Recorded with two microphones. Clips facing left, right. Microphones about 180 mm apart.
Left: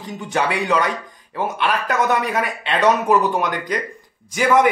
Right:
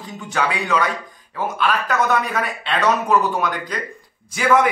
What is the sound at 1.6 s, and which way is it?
Speech, 15° left (ahead or behind).